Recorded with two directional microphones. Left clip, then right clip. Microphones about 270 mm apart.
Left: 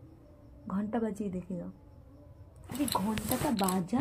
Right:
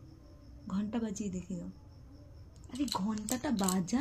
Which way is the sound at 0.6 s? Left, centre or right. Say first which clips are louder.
Left 4 dB; centre.